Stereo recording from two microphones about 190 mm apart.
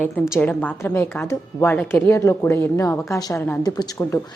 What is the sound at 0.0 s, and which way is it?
A woman's voice, 10° left (ahead or behind).